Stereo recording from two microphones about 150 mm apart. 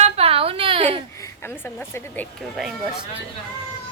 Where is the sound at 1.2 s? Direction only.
15° left (ahead or behind).